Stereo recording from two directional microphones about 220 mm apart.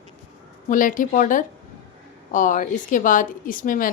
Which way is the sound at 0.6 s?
35° left (ahead or behind).